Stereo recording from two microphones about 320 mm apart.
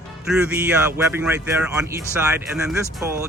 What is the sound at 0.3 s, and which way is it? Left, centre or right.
Speech, centre.